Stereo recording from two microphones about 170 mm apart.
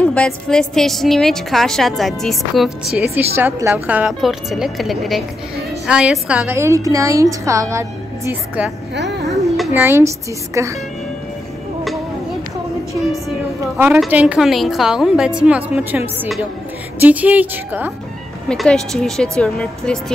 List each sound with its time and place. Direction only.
0.0 s a woman's voice: 5° left (ahead or behind)
3.3 s a woman's voice: 15° right (ahead or behind)
8.3 s a woman's voice: 5° right (ahead or behind)
8.9 s speech: 90° right
9.8 s a woman's voice: 15° right (ahead or behind)
13.7 s a woman's voice: 5° right (ahead or behind)
18.5 s a woman's voice: 5° left (ahead or behind)